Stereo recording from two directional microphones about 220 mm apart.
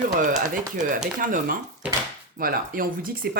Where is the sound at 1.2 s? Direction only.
40° right (ahead or behind).